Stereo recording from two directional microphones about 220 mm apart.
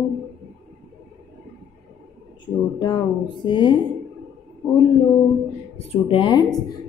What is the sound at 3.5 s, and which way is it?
Speech, 20° left (ahead or behind).